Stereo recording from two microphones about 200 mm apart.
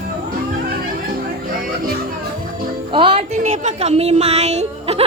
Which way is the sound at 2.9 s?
25° right (ahead or behind).